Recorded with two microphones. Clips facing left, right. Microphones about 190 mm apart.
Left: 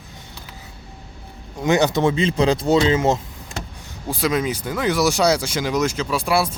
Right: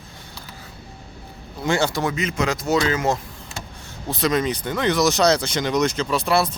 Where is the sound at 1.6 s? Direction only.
20° left (ahead or behind).